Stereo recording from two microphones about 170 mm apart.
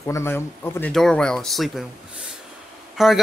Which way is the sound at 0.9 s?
5° left (ahead or behind).